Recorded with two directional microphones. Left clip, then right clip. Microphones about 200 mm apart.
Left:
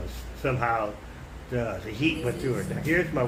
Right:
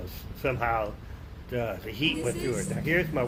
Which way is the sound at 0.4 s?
35° right (ahead or behind).